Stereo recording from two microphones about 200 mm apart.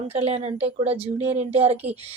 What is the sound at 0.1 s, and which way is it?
A woman's voice, 30° right (ahead or behind).